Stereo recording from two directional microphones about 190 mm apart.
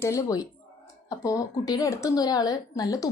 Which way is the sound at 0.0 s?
15° left (ahead or behind).